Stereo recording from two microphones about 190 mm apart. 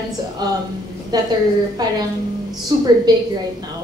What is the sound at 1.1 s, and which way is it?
Speech, 20° right (ahead or behind).